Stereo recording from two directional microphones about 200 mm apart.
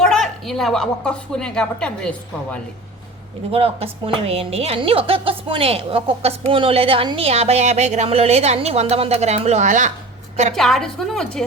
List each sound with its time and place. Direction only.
0.0 s a woman's voice: centre (ahead or behind)
3.5 s speech: 30° right (ahead or behind)
10.5 s a woman's voice: centre (ahead or behind)